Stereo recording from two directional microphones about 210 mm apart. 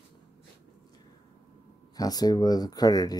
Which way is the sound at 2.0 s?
20° left (ahead or behind).